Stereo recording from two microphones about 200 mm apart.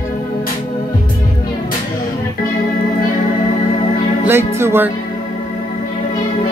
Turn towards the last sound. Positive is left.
turn(degrees=-10)  # may be behind; listen again after turning